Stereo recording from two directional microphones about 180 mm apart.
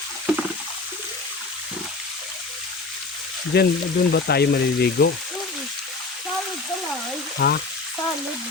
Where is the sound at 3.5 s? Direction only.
65° left (ahead or behind).